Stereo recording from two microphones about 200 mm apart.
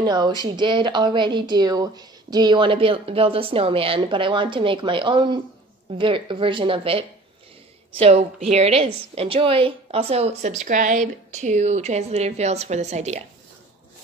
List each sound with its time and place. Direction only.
0.0 s a woman's voice: 20° right (ahead or behind)